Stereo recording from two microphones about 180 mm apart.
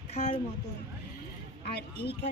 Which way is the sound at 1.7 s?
65° left (ahead or behind).